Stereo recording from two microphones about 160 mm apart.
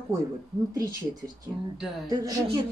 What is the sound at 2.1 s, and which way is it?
Speech, 20° right (ahead or behind).